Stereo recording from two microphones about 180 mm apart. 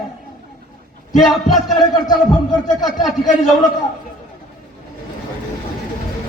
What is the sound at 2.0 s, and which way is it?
Speech, 20° left (ahead or behind).